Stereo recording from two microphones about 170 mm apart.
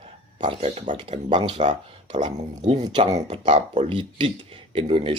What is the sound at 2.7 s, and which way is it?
Speech, 25° right (ahead or behind).